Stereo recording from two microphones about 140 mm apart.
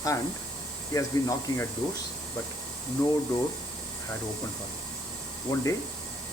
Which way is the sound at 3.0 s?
30° left (ahead or behind).